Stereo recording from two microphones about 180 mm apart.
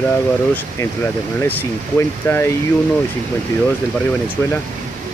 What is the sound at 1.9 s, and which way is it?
Speech, 15° left (ahead or behind).